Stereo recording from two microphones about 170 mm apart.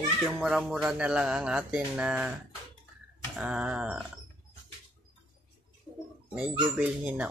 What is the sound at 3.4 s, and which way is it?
Speech, 5° right (ahead or behind).